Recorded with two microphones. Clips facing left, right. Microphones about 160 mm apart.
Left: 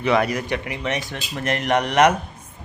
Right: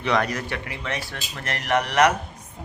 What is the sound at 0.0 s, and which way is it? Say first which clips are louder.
Speech: left 4 dB; 5° left (ahead or behind).